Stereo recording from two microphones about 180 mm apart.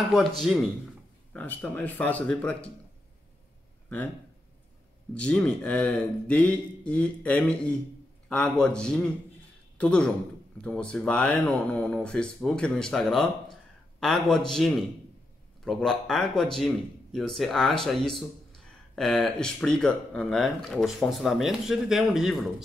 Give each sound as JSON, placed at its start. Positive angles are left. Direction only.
{"t": 0.4, "sound": "speech", "side_deg": 0}
{"t": 5.1, "sound": "speech", "side_deg": 5}